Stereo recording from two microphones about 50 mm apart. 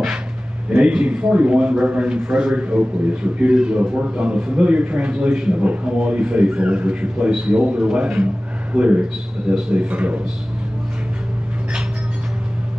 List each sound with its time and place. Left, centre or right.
0.7 s a man's voice: right